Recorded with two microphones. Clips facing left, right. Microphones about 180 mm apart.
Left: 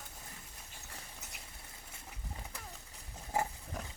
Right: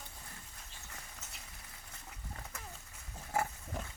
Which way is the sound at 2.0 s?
15° left (ahead or behind).